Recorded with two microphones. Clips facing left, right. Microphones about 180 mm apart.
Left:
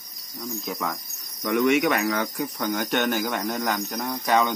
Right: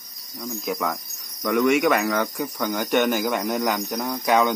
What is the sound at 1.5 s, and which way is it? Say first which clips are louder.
Speech: right 2 dB; centre (ahead or behind).